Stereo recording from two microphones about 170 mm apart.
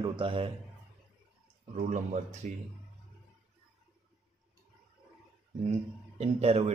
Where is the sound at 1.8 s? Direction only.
45° right (ahead or behind).